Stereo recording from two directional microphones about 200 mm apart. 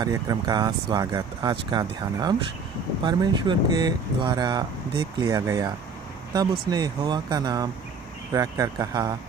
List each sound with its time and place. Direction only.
0.0 s speech: 20° right (ahead or behind)
6.7 s speech: 20° right (ahead or behind)